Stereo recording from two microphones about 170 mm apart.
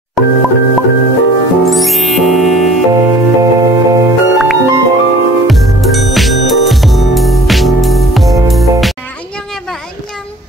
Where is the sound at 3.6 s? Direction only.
20° right (ahead or behind).